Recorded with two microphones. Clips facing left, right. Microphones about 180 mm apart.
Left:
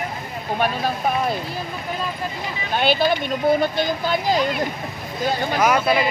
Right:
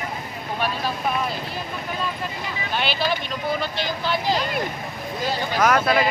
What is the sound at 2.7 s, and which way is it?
Speech, 50° left (ahead or behind).